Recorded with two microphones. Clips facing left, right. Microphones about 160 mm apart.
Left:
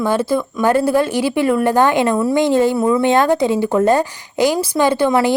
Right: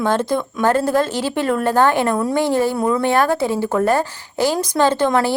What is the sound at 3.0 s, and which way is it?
A woman's voice, 20° left (ahead or behind).